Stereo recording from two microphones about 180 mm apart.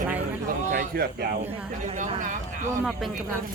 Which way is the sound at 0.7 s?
55° right (ahead or behind).